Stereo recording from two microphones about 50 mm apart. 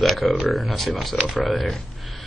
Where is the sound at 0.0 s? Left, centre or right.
Centre.